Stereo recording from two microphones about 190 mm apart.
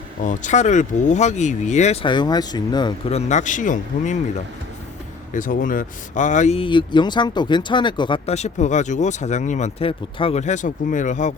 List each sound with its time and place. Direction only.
0.2 s speech: 40° left (ahead or behind); by 2.9 s 20° left (ahead or behind)
3.1 s speech: 35° left (ahead or behind)
5.3 s speech: 45° left (ahead or behind)